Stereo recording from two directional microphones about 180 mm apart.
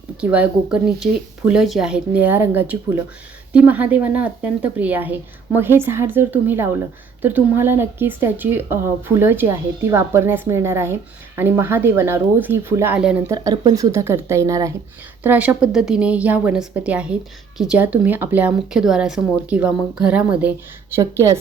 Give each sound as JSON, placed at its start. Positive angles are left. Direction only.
{"t": 0.2, "sound": "a woman's voice", "side_deg": -5}
{"t": 13.3, "sound": "a woman's voice", "side_deg": -20}